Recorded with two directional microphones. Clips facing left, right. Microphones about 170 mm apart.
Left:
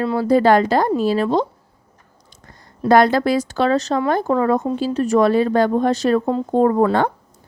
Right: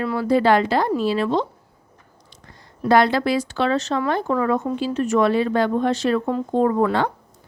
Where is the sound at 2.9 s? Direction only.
45° left (ahead or behind).